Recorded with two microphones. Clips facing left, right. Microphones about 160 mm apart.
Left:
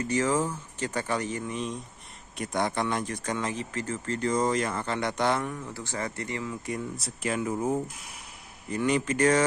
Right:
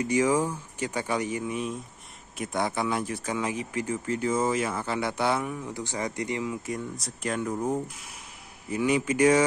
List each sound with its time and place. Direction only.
0.0 s speech: 10° right (ahead or behind)
6.6 s speech: centre (ahead or behind)
8.6 s speech: 10° right (ahead or behind)